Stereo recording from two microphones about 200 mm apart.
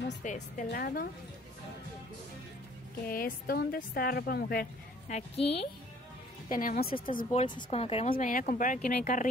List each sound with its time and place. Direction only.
0.2 s a woman's voice: 40° left (ahead or behind)
3.1 s a woman's voice: 45° left (ahead or behind)
5.1 s a woman's voice: 30° left (ahead or behind)
6.5 s a woman's voice: 45° left (ahead or behind)
7.3 s speech: 25° left (ahead or behind)